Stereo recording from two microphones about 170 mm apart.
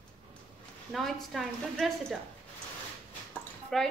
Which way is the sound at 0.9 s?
Centre (ahead or behind).